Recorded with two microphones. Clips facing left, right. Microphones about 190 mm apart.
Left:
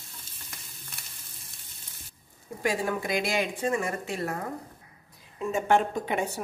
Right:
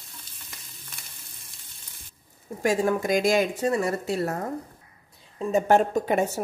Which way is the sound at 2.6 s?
45° right (ahead or behind).